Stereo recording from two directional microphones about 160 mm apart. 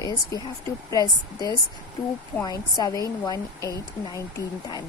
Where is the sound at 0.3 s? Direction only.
20° left (ahead or behind).